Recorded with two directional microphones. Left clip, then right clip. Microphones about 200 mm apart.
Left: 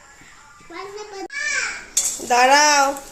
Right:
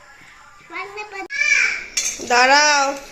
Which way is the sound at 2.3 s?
10° left (ahead or behind).